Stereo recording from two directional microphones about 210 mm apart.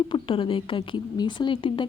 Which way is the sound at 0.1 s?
25° left (ahead or behind).